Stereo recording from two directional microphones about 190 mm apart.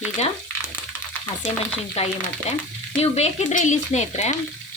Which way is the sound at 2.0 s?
35° left (ahead or behind).